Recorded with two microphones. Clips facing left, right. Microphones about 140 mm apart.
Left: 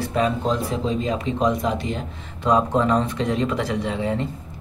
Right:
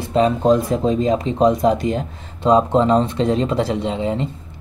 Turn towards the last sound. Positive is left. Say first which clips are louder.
# right 3 dB
turn(degrees=-20)  # may be behind; listen again after turning